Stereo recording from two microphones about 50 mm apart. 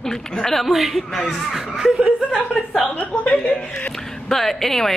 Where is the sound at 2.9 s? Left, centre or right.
Left.